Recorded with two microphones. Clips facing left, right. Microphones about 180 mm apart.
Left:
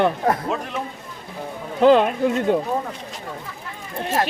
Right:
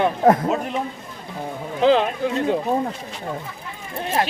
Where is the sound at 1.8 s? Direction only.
50° left (ahead or behind).